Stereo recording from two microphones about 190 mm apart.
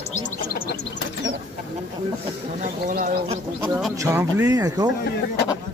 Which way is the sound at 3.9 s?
15° right (ahead or behind).